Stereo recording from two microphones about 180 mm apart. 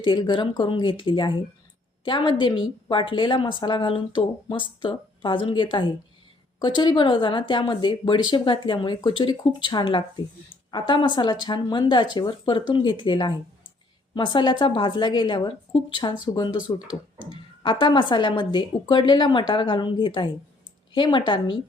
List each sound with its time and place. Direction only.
0.0 s speech: 25° left (ahead or behind)